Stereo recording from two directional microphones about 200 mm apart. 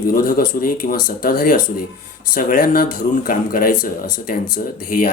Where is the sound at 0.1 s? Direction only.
45° left (ahead or behind).